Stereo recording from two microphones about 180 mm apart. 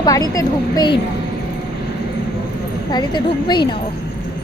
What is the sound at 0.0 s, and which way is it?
Speech, 20° left (ahead or behind).